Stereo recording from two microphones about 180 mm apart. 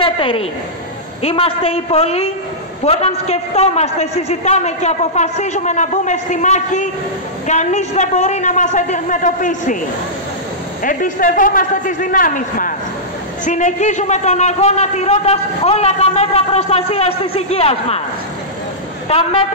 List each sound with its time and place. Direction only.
0.0 s a woman's voice: 30° left (ahead or behind); by 9.8 s 45° left (ahead or behind)
10.8 s a man's voice: 50° left (ahead or behind)
19.0 s a man's voice: 35° left (ahead or behind)